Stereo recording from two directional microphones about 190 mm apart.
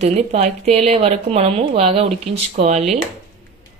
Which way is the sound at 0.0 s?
35° right (ahead or behind).